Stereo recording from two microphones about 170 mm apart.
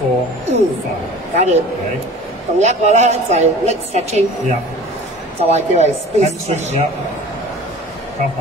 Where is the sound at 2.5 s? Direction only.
40° right (ahead or behind).